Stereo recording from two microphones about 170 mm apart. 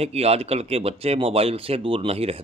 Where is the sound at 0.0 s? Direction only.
35° right (ahead or behind).